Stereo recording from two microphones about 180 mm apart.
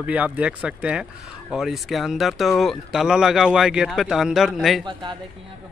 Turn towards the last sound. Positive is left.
turn(degrees=-25)  # may be behind; listen again after turning